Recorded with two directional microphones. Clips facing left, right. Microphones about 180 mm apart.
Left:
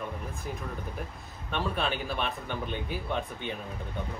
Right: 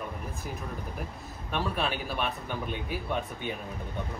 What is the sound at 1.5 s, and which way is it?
A man's voice, 5° right (ahead or behind).